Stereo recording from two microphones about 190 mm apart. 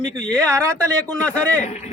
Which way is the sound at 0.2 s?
5° left (ahead or behind).